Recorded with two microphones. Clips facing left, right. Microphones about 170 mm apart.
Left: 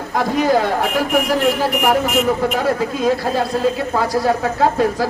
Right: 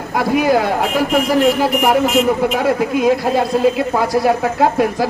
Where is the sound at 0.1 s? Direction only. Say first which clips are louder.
Right 2 dB; 10° right (ahead or behind).